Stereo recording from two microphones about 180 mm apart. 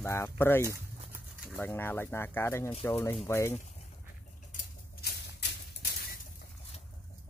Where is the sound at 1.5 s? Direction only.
10° left (ahead or behind).